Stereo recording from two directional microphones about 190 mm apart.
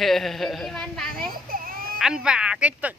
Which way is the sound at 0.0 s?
Centre (ahead or behind).